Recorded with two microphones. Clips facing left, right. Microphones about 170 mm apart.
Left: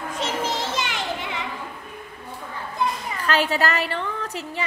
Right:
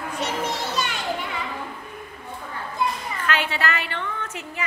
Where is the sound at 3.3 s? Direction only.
40° left (ahead or behind).